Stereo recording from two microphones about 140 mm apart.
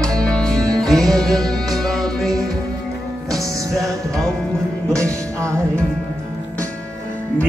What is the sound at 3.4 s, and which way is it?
Music, 25° right (ahead or behind).